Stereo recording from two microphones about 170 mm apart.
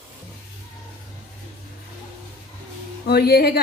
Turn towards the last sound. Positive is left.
turn(degrees=70)  # may be behind; listen again after turning